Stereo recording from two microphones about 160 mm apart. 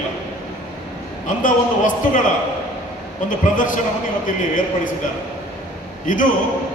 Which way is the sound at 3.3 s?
55° left (ahead or behind).